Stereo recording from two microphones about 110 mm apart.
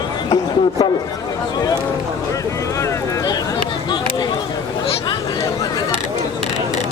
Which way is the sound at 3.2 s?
40° left (ahead or behind).